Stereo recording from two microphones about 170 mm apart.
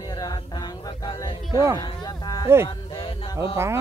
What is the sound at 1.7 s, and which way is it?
Music, 20° left (ahead or behind).